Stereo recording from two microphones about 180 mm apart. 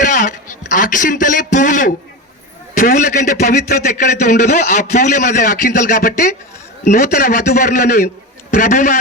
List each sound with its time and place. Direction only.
0.0 s a man's voice: 45° left (ahead or behind)